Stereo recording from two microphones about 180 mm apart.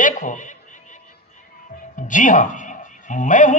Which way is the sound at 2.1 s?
45° left (ahead or behind).